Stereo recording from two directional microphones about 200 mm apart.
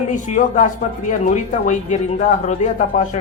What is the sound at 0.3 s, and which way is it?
A man's voice, 40° left (ahead or behind).